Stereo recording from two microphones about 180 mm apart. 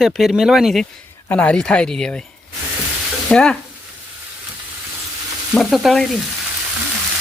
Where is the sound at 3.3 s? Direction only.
5° left (ahead or behind).